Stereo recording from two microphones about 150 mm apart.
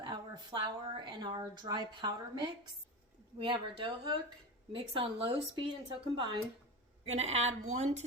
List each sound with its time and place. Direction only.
0.0 s a woman's voice: 25° right (ahead or behind)
7.2 s speech: 45° right (ahead or behind)